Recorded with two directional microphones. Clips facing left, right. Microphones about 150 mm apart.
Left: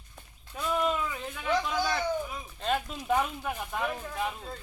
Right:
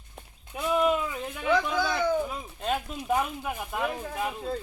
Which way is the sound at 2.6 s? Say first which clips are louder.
Even; 10° right (ahead or behind).